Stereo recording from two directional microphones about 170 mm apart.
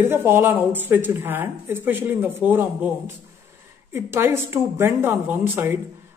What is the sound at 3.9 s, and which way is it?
A woman's voice, 15° right (ahead or behind).